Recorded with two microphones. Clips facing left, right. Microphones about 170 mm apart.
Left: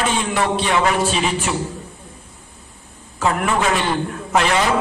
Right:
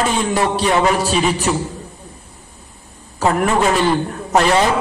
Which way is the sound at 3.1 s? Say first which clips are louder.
Right 3 dB; 40° right (ahead or behind).